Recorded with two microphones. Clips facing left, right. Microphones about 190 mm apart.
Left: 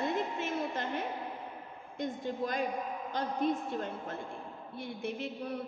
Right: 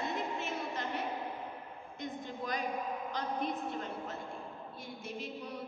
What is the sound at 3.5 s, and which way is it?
A woman's voice, 50° left (ahead or behind).